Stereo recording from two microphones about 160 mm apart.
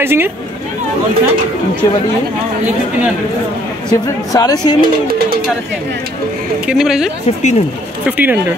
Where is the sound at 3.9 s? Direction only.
25° left (ahead or behind).